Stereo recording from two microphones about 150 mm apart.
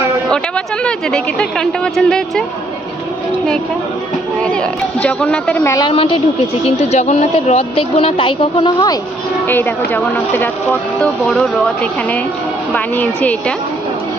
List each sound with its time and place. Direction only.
0.3 s speech: 5° left (ahead or behind)
4.4 s speech: 5° left (ahead or behind)
5.9 s a woman's voice: 40° left (ahead or behind)
9.5 s speech: 15° left (ahead or behind)